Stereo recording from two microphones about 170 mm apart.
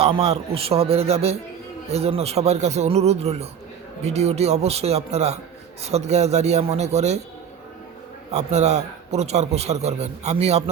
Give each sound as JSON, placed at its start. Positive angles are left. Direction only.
{"t": 0.0, "sound": "a man's voice", "side_deg": -35}
{"t": 8.3, "sound": "a man's voice", "side_deg": -40}